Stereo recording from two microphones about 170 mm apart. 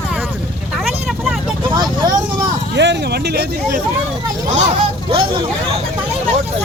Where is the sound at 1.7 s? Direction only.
25° right (ahead or behind).